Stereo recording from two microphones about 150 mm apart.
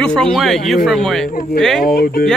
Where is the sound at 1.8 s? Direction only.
80° left.